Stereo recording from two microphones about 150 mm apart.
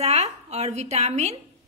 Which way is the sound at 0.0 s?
45° right (ahead or behind).